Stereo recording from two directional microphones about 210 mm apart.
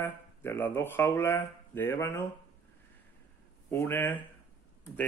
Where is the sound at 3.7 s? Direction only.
10° left (ahead or behind).